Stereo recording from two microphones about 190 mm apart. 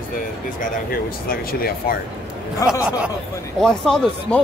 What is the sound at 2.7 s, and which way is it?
Speech, 5° right (ahead or behind).